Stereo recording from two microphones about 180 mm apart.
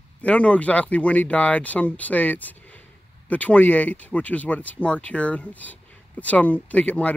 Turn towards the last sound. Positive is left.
turn(degrees=10)  # may be behind; listen again after turning